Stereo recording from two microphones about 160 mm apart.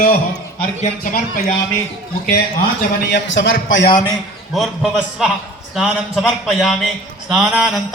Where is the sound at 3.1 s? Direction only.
90° left.